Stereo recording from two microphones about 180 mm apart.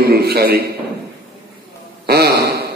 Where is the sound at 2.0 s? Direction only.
60° right (ahead or behind).